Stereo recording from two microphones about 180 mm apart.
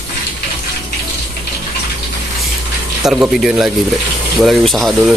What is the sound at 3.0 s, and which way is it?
Speech, centre (ahead or behind).